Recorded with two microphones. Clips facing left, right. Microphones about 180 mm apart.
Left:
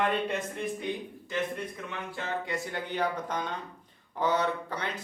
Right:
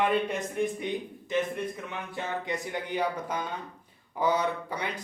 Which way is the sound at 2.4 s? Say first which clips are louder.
Right 1 dB; 15° right (ahead or behind).